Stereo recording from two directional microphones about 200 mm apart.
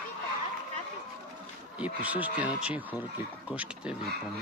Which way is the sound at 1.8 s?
5° right (ahead or behind).